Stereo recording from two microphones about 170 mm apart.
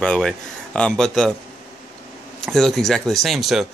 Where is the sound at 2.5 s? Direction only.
Centre (ahead or behind).